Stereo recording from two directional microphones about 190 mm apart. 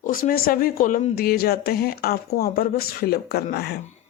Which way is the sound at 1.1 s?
55° left (ahead or behind).